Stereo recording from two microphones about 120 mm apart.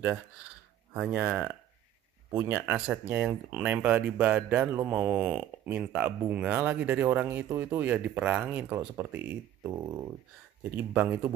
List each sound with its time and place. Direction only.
0.9 s speech: 10° right (ahead or behind); by 10.1 s 25° right (ahead or behind)
10.6 s speech: 10° right (ahead or behind)